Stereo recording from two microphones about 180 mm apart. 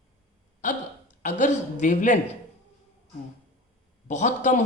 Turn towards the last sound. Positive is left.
turn(degrees=40)  # may be behind; listen again after turning